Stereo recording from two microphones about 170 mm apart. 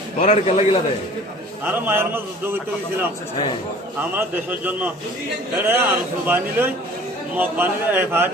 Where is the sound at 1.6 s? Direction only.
10° right (ahead or behind).